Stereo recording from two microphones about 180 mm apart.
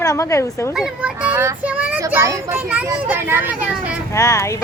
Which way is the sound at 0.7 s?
5° right (ahead or behind).